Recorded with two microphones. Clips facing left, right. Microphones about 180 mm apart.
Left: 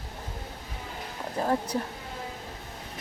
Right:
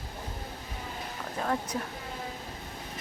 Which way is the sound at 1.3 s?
30° left (ahead or behind).